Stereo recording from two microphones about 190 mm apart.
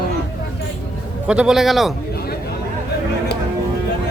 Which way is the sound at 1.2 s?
5° right (ahead or behind).